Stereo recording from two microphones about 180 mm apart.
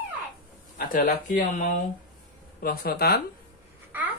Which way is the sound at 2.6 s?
60° left (ahead or behind).